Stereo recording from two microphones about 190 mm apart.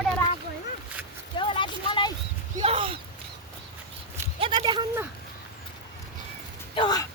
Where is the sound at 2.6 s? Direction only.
30° right (ahead or behind).